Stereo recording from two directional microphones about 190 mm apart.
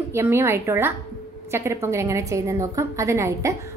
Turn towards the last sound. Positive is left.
turn(degrees=-15)  # may be behind; listen again after turning